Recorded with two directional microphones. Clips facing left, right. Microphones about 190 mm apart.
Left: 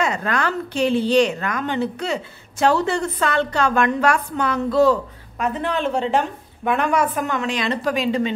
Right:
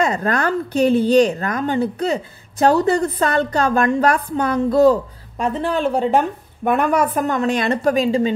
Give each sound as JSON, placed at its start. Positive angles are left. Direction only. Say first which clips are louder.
{"t": 0.0, "sound": "a woman's voice", "louder": "right 3 dB", "side_deg": -40}
{"t": 6.0, "sound": "a woman's voice", "louder": "right 3 dB", "side_deg": -45}